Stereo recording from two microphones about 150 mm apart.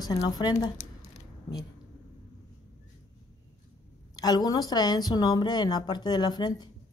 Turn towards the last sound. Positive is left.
turn(degrees=30)  # may be behind; listen again after turning